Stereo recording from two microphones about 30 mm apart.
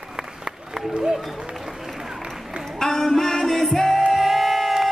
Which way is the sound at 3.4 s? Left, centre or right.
Centre.